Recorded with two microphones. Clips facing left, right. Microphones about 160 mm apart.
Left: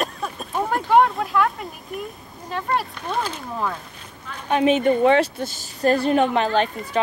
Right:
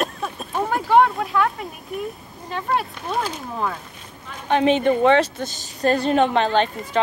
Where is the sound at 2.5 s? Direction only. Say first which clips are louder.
Right 1 dB; centre (ahead or behind).